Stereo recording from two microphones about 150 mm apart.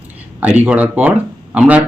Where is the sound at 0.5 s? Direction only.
10° right (ahead or behind).